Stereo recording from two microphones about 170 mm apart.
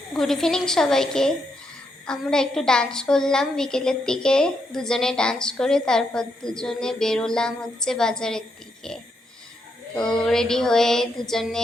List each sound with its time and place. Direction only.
0.1 s a woman's voice: 5° left (ahead or behind)
10.0 s speech: 25° left (ahead or behind)
10.2 s a woman's voice: 5° left (ahead or behind)